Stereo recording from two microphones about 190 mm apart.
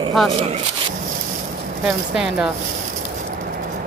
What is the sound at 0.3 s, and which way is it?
Speech, 30° right (ahead or behind).